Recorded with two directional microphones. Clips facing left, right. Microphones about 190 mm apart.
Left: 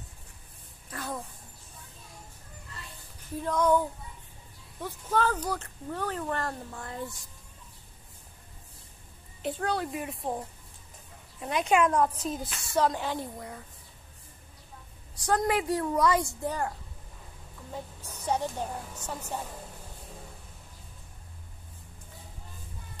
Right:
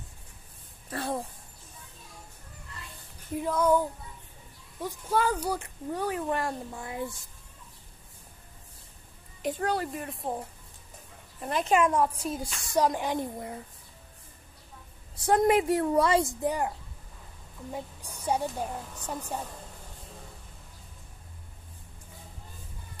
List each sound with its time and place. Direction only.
0.9 s speech: 30° right (ahead or behind)
3.3 s speech: 5° right (ahead or behind)
9.4 s speech: 10° right (ahead or behind)
9.9 s speech: centre (ahead or behind); by 13.6 s 20° right (ahead or behind)
15.1 s a woman's voice: 25° right (ahead or behind)
16.3 s speech: 15° right (ahead or behind)
17.7 s a woman's voice: 10° right (ahead or behind)